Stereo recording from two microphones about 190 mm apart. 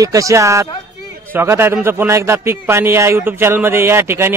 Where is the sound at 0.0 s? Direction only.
15° right (ahead or behind).